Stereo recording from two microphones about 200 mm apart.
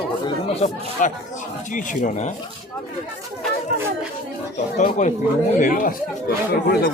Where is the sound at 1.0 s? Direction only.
40° left (ahead or behind).